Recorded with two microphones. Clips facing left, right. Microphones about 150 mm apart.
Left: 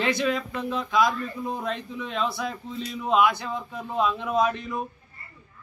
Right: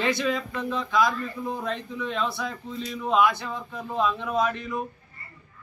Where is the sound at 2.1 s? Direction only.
10° left (ahead or behind).